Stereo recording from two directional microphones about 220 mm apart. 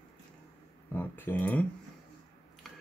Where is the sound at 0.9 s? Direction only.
10° left (ahead or behind).